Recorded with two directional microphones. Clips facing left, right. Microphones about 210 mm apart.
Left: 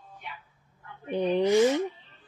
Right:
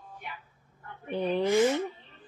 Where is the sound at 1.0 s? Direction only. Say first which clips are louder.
Left 3 dB; 15° left (ahead or behind).